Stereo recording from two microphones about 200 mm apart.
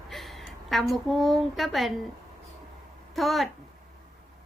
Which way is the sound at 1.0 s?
Centre (ahead or behind).